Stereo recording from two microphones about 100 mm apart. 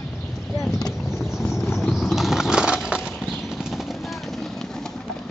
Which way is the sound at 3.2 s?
Centre (ahead or behind).